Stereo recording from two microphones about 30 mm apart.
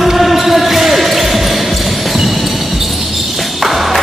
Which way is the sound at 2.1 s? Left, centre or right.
Centre.